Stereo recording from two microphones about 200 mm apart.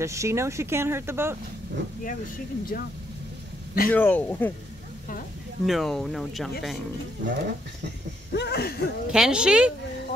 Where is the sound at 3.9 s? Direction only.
10° left (ahead or behind).